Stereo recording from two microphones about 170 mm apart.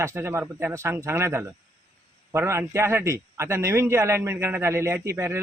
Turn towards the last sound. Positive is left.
turn(degrees=-15)  # may be behind; listen again after turning